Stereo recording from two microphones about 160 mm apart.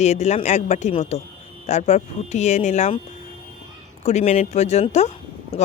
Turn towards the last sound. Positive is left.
turn(degrees=45)  # may be behind; listen again after turning